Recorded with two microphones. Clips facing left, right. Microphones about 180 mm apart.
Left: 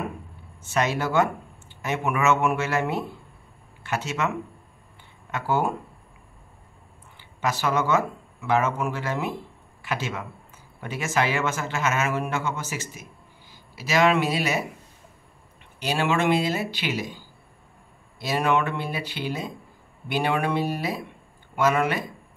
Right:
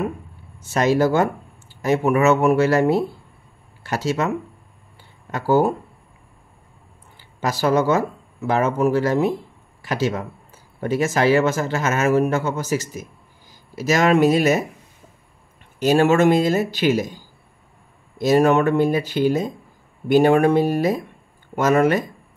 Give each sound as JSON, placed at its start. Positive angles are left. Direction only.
{"t": 0.6, "sound": "speech", "side_deg": -40}
{"t": 5.3, "sound": "speech", "side_deg": -40}
{"t": 7.2, "sound": "speech", "side_deg": -35}
{"t": 15.8, "sound": "speech", "side_deg": -45}